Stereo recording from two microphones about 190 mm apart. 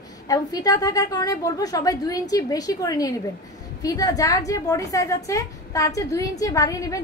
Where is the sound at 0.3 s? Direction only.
20° left (ahead or behind).